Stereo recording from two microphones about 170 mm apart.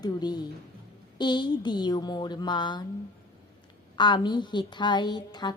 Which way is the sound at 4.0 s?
25° left (ahead or behind).